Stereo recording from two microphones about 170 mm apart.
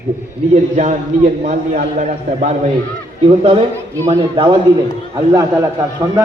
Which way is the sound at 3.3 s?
35° right (ahead or behind).